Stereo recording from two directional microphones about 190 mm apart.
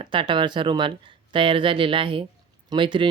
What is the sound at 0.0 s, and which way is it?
Speech, 25° right (ahead or behind).